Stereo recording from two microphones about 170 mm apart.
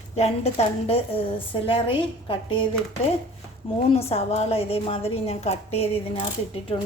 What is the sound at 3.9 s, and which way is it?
Speech, 35° left (ahead or behind).